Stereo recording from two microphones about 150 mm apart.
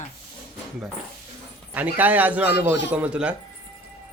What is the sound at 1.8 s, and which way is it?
A man's voice, 10° right (ahead or behind).